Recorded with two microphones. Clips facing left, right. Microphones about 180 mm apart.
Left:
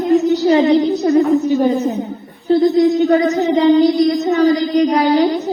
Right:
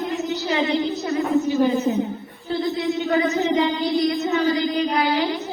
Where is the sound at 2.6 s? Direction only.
40° left (ahead or behind).